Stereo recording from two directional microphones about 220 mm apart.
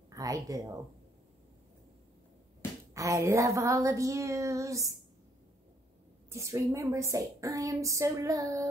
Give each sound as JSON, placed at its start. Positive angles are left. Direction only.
{"t": 0.1, "sound": "a woman's voice", "side_deg": -15}
{"t": 2.9, "sound": "a woman's voice", "side_deg": -15}
{"t": 6.3, "sound": "a woman's voice", "side_deg": -15}